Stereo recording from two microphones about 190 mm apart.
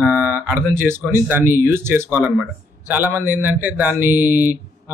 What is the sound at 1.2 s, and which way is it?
A man's voice, 10° right (ahead or behind).